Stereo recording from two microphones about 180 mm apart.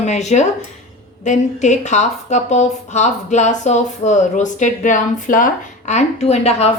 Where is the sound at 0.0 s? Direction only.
40° left (ahead or behind).